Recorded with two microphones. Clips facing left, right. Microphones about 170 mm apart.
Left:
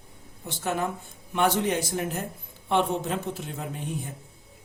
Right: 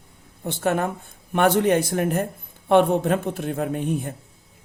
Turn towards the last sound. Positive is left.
turn(degrees=-60)  # may be behind; listen again after turning